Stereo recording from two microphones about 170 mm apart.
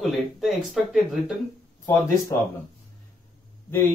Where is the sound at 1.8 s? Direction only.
25° left (ahead or behind).